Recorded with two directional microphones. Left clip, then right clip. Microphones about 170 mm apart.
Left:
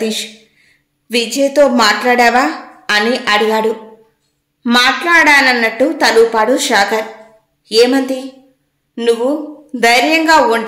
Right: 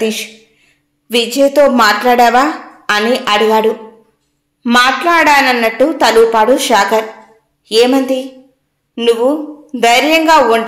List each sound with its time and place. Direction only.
0.0 s a woman's voice: 5° right (ahead or behind)